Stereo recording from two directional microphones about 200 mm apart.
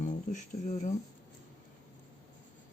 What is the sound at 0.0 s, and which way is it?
Speech, 40° left (ahead or behind).